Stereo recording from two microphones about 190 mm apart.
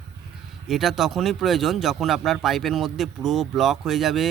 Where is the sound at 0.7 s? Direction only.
Centre (ahead or behind).